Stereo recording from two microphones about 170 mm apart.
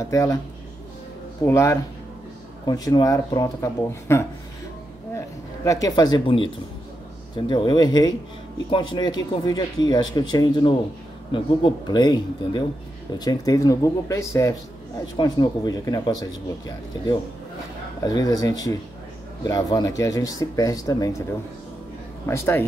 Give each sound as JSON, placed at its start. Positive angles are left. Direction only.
{"t": 0.0, "sound": "speech", "side_deg": 20}
{"t": 1.4, "sound": "speech", "side_deg": 15}
{"t": 22.2, "sound": "speech", "side_deg": 15}